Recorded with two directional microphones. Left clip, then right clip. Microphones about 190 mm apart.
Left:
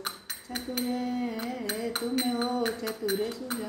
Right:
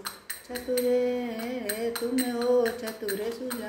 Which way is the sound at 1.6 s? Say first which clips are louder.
Right 2 dB; 15° left (ahead or behind).